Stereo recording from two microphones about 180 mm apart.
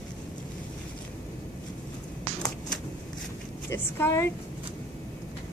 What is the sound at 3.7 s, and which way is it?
Speech, 15° left (ahead or behind).